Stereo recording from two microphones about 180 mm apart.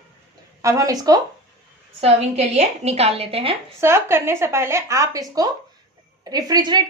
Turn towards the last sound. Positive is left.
turn(degrees=-20)  # may be behind; listen again after turning